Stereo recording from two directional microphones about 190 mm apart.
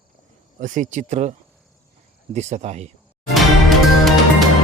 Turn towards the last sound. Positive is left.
turn(degrees=0)  # may be behind; listen again after turning